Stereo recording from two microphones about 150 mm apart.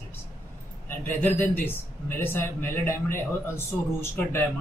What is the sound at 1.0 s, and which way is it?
Speech, 15° left (ahead or behind).